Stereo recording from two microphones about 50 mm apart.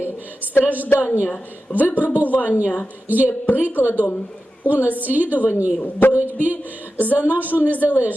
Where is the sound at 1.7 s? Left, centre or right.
Left.